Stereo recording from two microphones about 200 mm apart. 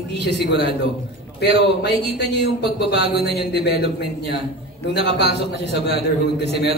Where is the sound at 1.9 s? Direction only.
30° right (ahead or behind).